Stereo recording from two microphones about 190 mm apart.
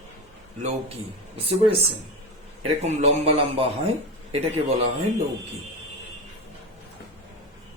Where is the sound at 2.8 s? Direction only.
35° right (ahead or behind).